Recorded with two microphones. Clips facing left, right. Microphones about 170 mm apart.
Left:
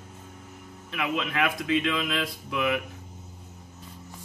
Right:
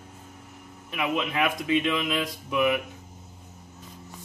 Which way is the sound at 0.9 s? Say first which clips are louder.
Right 2 dB; 15° right (ahead or behind).